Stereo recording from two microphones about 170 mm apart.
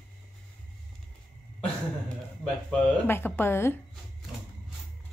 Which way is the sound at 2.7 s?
10° left (ahead or behind).